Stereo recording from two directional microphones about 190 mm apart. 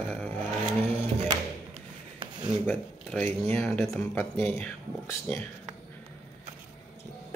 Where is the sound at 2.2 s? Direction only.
25° right (ahead or behind).